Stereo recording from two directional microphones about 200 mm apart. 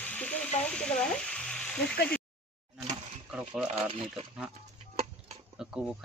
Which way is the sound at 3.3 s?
5° right (ahead or behind).